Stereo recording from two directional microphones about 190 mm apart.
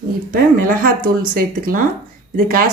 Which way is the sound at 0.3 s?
45° right (ahead or behind).